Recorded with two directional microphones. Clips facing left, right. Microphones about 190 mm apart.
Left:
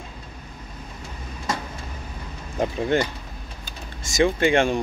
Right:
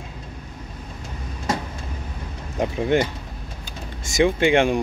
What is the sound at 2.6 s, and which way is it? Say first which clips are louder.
Speech: right 2 dB; 20° right (ahead or behind).